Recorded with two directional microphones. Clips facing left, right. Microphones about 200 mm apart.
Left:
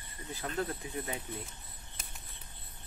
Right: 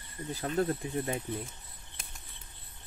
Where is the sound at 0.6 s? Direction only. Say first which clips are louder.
Right 6 dB; 40° right (ahead or behind).